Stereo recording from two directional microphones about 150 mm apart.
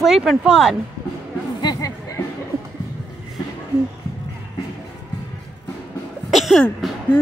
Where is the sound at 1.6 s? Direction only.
25° left (ahead or behind).